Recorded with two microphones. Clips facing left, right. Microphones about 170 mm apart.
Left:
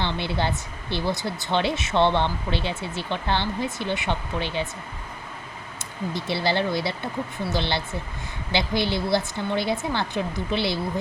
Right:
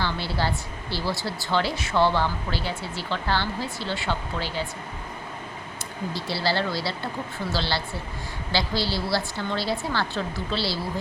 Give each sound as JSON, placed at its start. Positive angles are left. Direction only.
{"t": 0.0, "sound": "speech", "side_deg": 20}
{"t": 6.1, "sound": "speech", "side_deg": 20}